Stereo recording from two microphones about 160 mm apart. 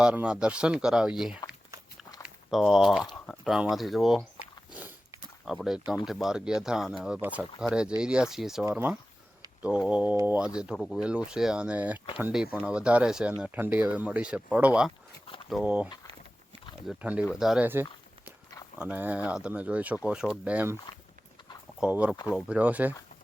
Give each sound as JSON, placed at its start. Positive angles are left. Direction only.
{"t": 0.0, "sound": "speech", "side_deg": -5}
{"t": 2.2, "sound": "a sound", "side_deg": 0}
{"t": 3.2, "sound": "speech", "side_deg": 0}
{"t": 4.7, "sound": "a sound", "side_deg": -10}
{"t": 6.1, "sound": "speech", "side_deg": 0}
{"t": 16.9, "sound": "speech", "side_deg": -10}
{"t": 18.8, "sound": "speech", "side_deg": -10}
{"t": 21.8, "sound": "speech", "side_deg": -10}